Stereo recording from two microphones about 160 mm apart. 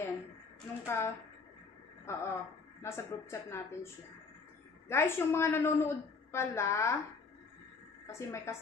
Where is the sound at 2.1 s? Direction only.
15° left (ahead or behind).